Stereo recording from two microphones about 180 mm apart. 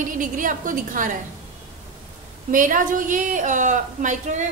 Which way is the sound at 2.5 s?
45° right (ahead or behind).